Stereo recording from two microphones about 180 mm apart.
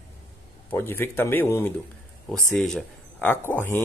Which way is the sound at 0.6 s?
10° left (ahead or behind).